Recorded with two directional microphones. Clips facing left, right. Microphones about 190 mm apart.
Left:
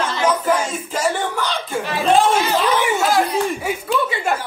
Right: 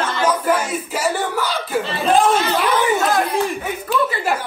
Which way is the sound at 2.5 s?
10° left (ahead or behind).